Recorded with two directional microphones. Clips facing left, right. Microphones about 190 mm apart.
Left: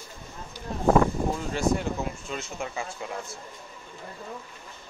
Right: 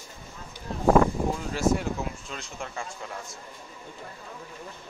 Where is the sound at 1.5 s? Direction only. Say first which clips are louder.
Right 2 dB; 5° right (ahead or behind).